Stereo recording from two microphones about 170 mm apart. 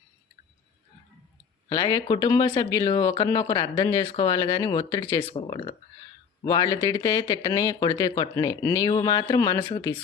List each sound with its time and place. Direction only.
1.7 s speech: 25° left (ahead or behind)